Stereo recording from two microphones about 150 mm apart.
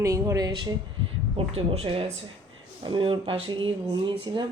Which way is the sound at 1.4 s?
40° right (ahead or behind).